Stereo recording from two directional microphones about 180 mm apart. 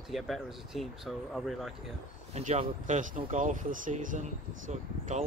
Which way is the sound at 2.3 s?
40° right (ahead or behind).